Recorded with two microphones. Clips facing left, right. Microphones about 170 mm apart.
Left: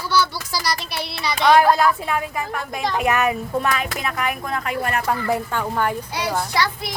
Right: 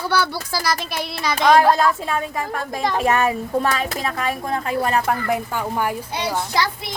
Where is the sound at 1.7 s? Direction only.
30° right (ahead or behind).